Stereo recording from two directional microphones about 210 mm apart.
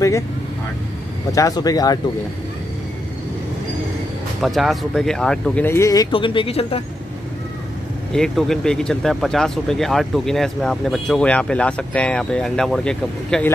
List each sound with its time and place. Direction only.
1.3 s speech: 15° left (ahead or behind)
4.4 s speech: centre (ahead or behind); by 6.8 s 25° left (ahead or behind)
8.1 s speech: centre (ahead or behind)